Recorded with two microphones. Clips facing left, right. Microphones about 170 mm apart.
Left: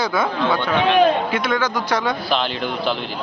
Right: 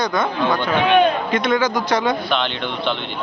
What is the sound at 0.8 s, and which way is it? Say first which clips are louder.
Speech: even; 35° left (ahead or behind).